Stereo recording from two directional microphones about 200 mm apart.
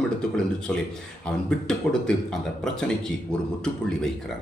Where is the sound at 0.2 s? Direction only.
5° left (ahead or behind).